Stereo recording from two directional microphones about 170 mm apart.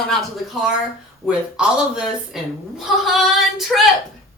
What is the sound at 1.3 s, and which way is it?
Speech, 5° right (ahead or behind).